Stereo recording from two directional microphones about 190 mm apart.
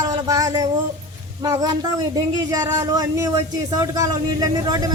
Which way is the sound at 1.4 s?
20° right (ahead or behind).